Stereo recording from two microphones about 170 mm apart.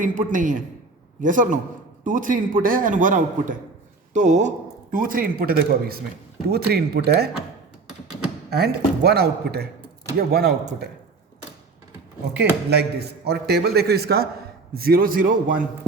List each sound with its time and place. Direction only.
0.0 s a man's voice: 50° right (ahead or behind); by 7.3 s 70° right (ahead or behind)
8.4 s a man's voice: 70° right (ahead or behind)
12.7 s a man's voice: 75° right (ahead or behind); by 15.6 s 55° right (ahead or behind)